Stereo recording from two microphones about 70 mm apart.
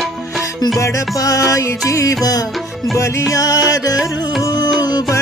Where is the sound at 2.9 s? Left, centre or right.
Left.